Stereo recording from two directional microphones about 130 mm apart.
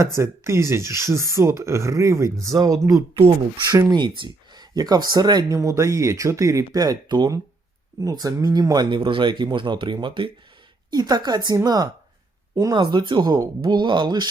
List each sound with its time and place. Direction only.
0.0 s speech: 20° right (ahead or behind)
12.8 s speech: 35° right (ahead or behind)